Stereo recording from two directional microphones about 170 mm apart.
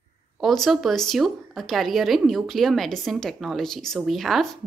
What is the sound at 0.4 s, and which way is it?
A woman's voice, centre (ahead or behind).